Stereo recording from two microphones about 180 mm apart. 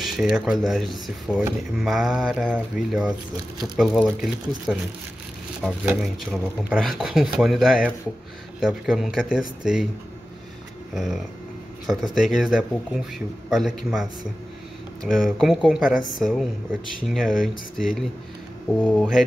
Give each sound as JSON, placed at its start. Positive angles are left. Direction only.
{"t": 0.0, "sound": "speech", "side_deg": 0}
{"t": 11.0, "sound": "speech", "side_deg": 0}
{"t": 15.0, "sound": "speech", "side_deg": 0}
{"t": 15.9, "sound": "a woman's voice", "side_deg": 45}
{"t": 16.2, "sound": "speech", "side_deg": 0}
{"t": 18.9, "sound": "speech", "side_deg": 0}